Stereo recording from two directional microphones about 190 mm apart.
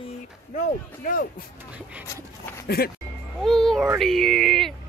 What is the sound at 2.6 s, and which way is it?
Speech, 55° left (ahead or behind).